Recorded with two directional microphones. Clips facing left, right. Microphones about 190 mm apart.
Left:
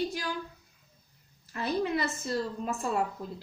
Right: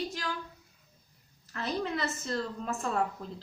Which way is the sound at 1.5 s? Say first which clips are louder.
Left 3 dB; 10° left (ahead or behind).